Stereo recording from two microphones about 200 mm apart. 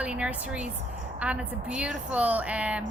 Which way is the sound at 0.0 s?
5° right (ahead or behind).